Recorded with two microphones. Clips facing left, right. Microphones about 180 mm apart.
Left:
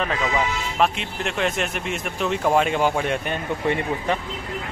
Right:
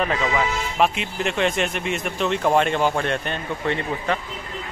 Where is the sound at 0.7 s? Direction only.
Centre (ahead or behind).